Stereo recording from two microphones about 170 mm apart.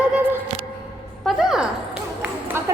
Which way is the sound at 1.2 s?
5° right (ahead or behind).